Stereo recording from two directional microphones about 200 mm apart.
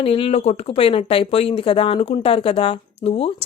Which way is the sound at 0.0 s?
30° left (ahead or behind).